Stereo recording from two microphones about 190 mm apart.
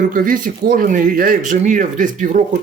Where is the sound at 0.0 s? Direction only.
45° right (ahead or behind).